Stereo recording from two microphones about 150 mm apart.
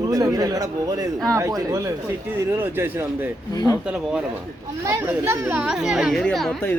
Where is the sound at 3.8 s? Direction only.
5° right (ahead or behind).